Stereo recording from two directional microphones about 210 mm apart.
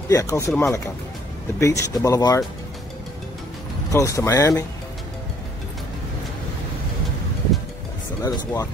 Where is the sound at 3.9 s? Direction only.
15° left (ahead or behind).